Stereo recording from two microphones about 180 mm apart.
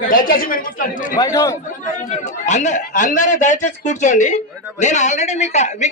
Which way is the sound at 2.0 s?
40° left (ahead or behind).